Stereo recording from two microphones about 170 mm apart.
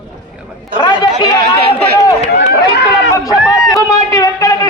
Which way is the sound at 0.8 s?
25° left (ahead or behind).